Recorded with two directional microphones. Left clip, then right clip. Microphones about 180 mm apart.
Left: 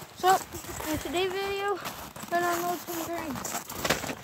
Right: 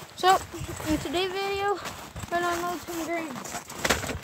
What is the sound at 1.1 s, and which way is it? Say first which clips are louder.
Speech: left 1 dB; 10° right (ahead or behind).